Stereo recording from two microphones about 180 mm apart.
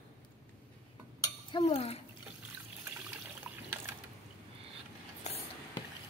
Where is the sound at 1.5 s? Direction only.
30° left (ahead or behind).